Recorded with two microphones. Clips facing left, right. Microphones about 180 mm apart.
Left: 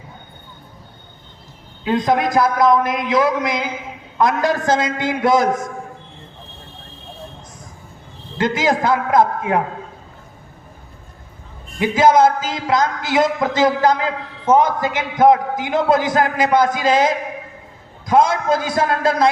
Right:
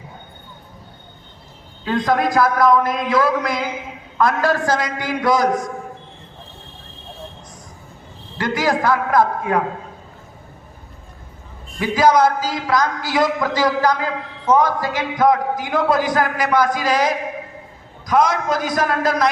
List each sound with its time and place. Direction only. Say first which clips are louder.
1.8 s a man's voice: left 1 dB; 20° left (ahead or behind)
8.4 s a man's voice: left 2 dB; 20° left (ahead or behind)
11.8 s a man's voice: left 2 dB; 25° left (ahead or behind)